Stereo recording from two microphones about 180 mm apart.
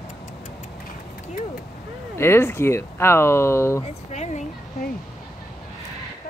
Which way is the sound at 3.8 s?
40° left (ahead or behind).